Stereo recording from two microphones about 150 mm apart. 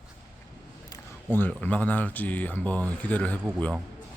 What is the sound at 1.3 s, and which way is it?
Speech, 10° left (ahead or behind).